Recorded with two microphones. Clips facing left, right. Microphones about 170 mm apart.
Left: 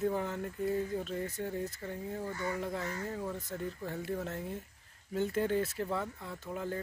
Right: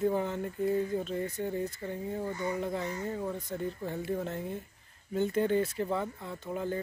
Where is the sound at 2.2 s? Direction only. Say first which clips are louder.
Right 3 dB; 20° right (ahead or behind).